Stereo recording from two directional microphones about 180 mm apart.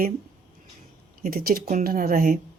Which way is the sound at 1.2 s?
55° right (ahead or behind).